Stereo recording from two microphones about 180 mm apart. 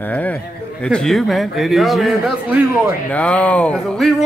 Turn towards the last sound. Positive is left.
turn(degrees=0)  # may be behind; listen again after turning